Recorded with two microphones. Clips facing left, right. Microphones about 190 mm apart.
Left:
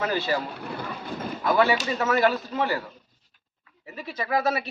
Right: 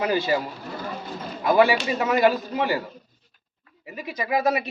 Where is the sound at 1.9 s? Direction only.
15° right (ahead or behind).